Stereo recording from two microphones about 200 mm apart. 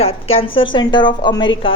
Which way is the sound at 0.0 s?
30° left (ahead or behind).